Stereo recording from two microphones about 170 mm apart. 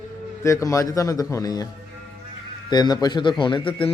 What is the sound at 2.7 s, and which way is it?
Speech, 25° left (ahead or behind).